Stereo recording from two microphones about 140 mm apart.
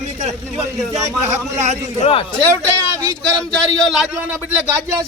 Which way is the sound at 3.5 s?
Centre (ahead or behind).